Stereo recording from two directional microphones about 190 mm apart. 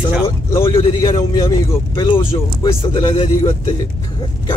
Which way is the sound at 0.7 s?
30° left (ahead or behind).